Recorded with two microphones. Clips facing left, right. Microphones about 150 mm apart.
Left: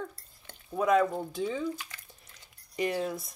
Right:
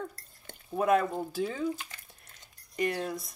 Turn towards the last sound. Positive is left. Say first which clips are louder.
# left 1 dB
turn(degrees=0)  # may be behind; listen again after turning